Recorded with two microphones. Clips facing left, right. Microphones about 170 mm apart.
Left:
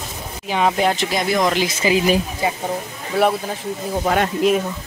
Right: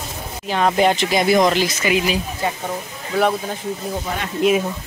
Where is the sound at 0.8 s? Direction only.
Centre (ahead or behind).